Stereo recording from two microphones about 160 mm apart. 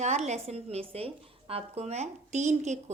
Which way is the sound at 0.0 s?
45° right (ahead or behind).